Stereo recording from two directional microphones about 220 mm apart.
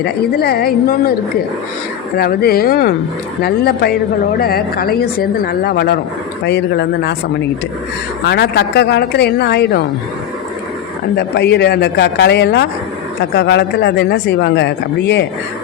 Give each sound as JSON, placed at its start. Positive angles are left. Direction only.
{"t": 0.0, "sound": "speech", "side_deg": 45}
{"t": 2.1, "sound": "speech", "side_deg": 45}
{"t": 8.3, "sound": "speech", "side_deg": 50}
{"t": 11.1, "sound": "speech", "side_deg": 45}